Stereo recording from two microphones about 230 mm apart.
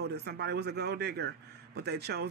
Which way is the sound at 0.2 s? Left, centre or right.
Right.